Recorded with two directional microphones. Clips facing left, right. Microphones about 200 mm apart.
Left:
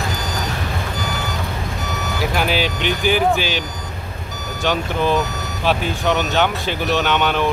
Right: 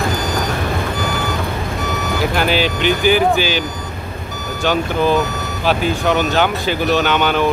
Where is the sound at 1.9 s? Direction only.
55° right (ahead or behind).